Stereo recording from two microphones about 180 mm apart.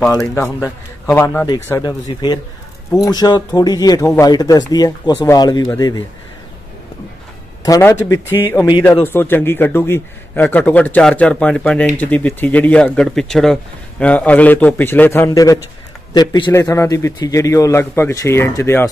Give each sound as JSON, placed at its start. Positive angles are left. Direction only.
{"t": 0.1, "sound": "speech", "side_deg": 15}
{"t": 7.6, "sound": "speech", "side_deg": 20}